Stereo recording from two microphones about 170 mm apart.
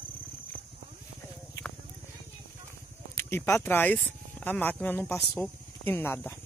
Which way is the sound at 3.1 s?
15° left (ahead or behind).